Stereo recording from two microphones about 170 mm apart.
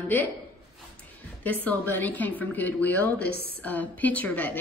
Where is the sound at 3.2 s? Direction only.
70° left (ahead or behind).